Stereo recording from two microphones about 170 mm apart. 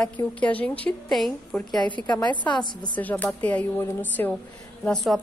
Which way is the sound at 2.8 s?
10° left (ahead or behind).